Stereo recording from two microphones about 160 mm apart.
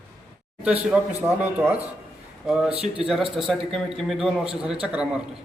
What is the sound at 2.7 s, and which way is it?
Speech, 35° right (ahead or behind).